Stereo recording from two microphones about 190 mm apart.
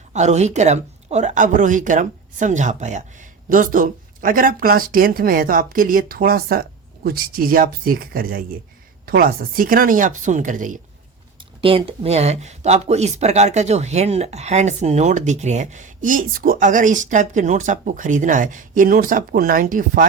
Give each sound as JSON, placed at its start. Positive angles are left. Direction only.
{"t": 0.1, "sound": "speech", "side_deg": -35}
{"t": 11.6, "sound": "speech", "side_deg": -30}